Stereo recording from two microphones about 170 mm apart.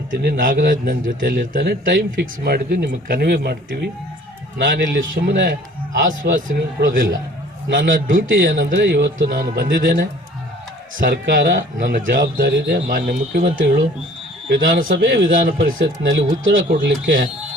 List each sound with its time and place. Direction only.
0.1 s a man's voice: 60° right (ahead or behind)
4.5 s a man's voice: 55° right (ahead or behind)
6.5 s a man's voice: 55° right (ahead or behind); by 10.1 s 75° right (ahead or behind)
11.0 s a man's voice: 60° right (ahead or behind)
14.5 s speech: 85° right
14.8 s speech: 70° right (ahead or behind); by 15.3 s 85° right
15.3 s speech: 75° right (ahead or behind)